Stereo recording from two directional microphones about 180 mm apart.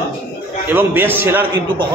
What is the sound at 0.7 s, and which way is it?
Speech, 10° right (ahead or behind).